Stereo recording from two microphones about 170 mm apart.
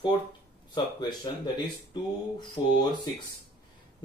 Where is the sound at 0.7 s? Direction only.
25° left (ahead or behind).